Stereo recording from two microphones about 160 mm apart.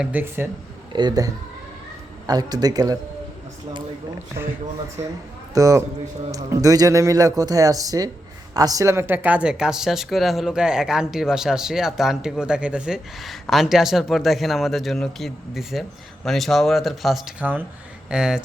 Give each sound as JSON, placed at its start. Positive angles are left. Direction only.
{"t": 0.0, "sound": "speech", "side_deg": -10}
{"t": 0.9, "sound": "speech", "side_deg": -25}
{"t": 5.5, "sound": "speech", "side_deg": -20}